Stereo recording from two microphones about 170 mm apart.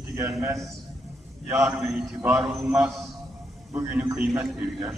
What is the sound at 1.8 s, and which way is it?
A man's voice, 5° right (ahead or behind).